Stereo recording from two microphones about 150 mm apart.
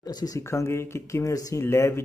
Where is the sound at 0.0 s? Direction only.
25° left (ahead or behind).